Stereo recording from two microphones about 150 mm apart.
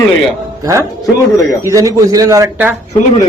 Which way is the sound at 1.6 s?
20° right (ahead or behind).